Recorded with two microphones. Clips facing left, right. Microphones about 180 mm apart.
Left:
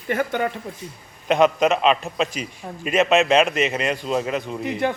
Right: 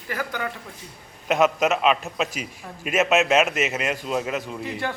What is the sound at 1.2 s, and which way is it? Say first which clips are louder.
A man's voice: left 3 dB; 5° right (ahead or behind).